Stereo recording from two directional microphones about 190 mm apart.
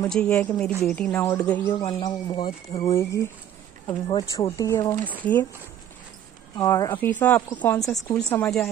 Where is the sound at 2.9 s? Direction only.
15° left (ahead or behind).